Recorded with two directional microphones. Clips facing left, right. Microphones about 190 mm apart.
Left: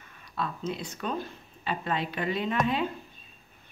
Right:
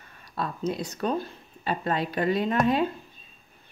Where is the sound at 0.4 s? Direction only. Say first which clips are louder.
Right 4 dB; 40° right (ahead or behind).